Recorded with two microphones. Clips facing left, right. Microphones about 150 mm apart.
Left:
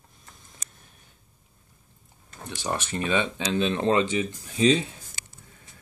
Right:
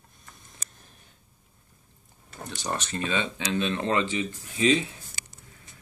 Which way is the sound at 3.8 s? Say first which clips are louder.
Left 4 dB; 30° left (ahead or behind).